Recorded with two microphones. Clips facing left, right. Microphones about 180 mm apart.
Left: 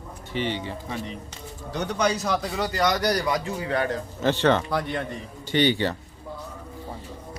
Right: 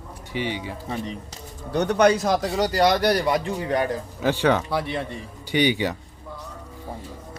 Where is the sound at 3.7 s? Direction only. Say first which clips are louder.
Right 1 dB; 15° right (ahead or behind).